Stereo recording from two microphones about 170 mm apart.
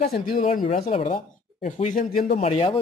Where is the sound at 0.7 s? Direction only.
40° left (ahead or behind).